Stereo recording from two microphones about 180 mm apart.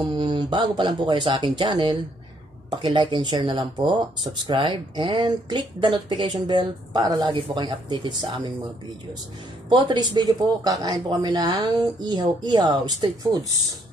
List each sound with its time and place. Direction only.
0.1 s speech: 25° right (ahead or behind)
9.7 s speech: 25° right (ahead or behind)